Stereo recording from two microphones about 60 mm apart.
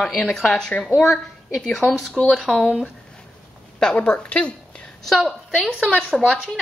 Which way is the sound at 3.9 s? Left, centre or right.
Left.